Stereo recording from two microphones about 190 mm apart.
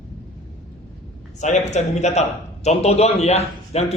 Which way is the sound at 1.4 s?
40° left (ahead or behind).